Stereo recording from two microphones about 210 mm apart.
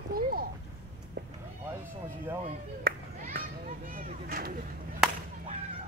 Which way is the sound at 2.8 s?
45° right (ahead or behind).